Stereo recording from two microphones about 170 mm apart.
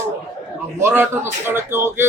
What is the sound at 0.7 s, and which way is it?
A man's voice, 15° right (ahead or behind).